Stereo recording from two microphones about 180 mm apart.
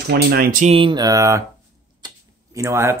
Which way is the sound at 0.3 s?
55° right (ahead or behind).